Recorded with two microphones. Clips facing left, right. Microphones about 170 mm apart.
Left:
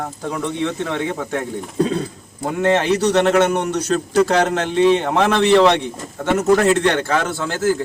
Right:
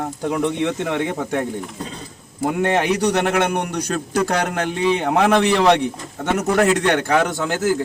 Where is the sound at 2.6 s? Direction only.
15° right (ahead or behind).